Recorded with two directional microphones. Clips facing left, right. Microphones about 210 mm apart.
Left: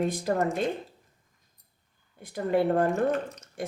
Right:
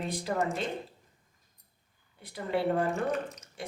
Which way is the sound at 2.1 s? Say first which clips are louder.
Left 6 dB; 50° left (ahead or behind).